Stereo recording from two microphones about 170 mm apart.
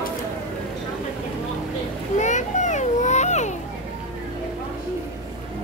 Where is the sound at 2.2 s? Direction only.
45° left (ahead or behind).